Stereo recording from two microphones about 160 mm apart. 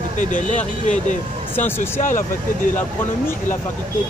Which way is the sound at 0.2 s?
50° left (ahead or behind).